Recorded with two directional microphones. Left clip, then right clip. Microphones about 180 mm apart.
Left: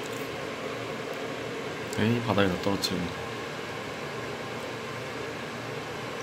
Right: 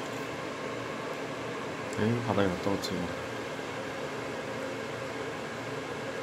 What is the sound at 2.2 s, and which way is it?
Speech, 10° left (ahead or behind).